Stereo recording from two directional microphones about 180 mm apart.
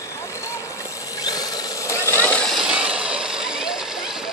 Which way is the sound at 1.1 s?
20° left (ahead or behind).